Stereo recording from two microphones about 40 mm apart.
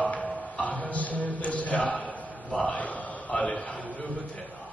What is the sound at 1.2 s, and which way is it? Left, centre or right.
Mantra, left.